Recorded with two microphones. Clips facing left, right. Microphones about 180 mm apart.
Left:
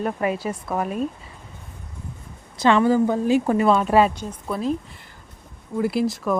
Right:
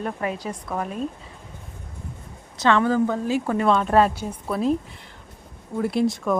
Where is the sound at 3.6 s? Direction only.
5° left (ahead or behind).